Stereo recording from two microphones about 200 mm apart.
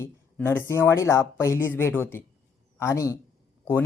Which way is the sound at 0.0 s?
10° left (ahead or behind).